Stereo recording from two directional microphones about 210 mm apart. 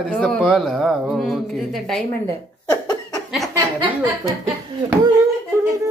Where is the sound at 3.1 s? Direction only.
Centre (ahead or behind).